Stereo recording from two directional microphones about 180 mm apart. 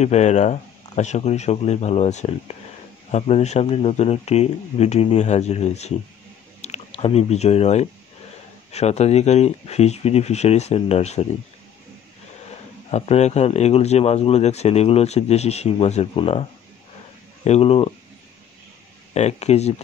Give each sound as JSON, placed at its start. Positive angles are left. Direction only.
{"t": 0.0, "sound": "speech", "side_deg": 40}
{"t": 12.9, "sound": "speech", "side_deg": 35}
{"t": 17.5, "sound": "speech", "side_deg": 35}
{"t": 19.1, "sound": "speech", "side_deg": 35}